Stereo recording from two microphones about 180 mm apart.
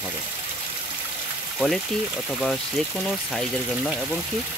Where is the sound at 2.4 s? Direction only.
5° left (ahead or behind).